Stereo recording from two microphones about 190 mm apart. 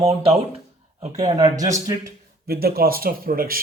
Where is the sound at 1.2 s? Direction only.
20° right (ahead or behind).